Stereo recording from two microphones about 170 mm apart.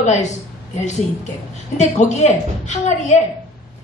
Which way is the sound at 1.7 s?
40° left (ahead or behind).